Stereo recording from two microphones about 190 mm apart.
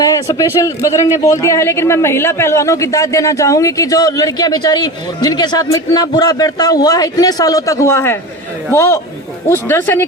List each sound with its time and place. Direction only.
0.0 s a man's voice: 15° left (ahead or behind)